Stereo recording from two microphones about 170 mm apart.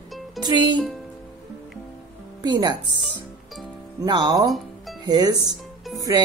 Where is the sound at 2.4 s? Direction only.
25° right (ahead or behind).